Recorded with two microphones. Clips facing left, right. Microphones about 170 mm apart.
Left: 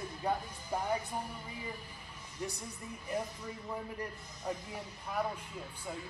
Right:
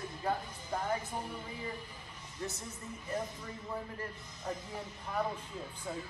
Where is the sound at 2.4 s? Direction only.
15° left (ahead or behind).